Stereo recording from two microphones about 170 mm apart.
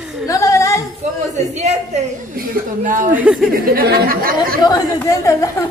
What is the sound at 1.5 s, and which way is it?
A woman's voice, 40° right (ahead or behind).